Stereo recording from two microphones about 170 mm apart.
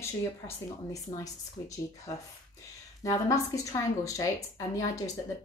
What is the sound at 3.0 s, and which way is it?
A woman's voice, 20° left (ahead or behind).